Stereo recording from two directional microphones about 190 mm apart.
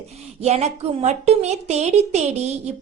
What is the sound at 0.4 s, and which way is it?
A woman's voice, 35° right (ahead or behind).